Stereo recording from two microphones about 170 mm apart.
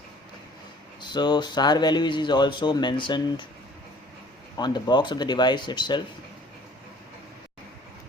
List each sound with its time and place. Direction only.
1.1 s speech: 25° left (ahead or behind)
4.5 s speech: 25° left (ahead or behind)